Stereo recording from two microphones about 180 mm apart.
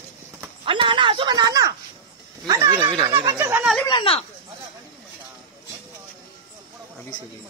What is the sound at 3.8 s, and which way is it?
Speech, 25° left (ahead or behind).